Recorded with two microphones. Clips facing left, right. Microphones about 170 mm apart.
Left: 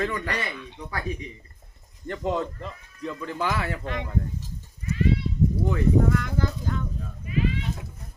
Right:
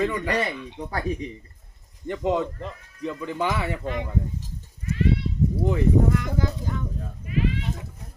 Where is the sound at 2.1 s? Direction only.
10° right (ahead or behind).